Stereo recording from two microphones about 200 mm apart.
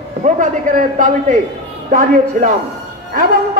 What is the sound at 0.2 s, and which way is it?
A man's voice, 40° right (ahead or behind).